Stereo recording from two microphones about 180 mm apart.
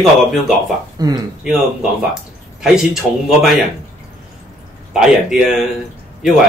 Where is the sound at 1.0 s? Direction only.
20° right (ahead or behind).